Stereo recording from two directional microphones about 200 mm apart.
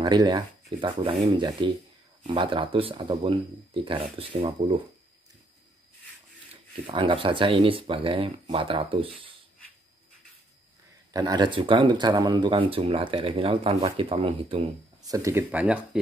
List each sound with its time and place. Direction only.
0.0 s speech: 20° right (ahead or behind)
6.5 s speech: 25° right (ahead or behind)
11.1 s speech: 20° right (ahead or behind)
15.0 s speech: 15° right (ahead or behind)